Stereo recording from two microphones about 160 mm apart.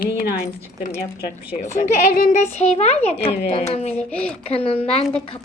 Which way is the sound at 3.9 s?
10° left (ahead or behind).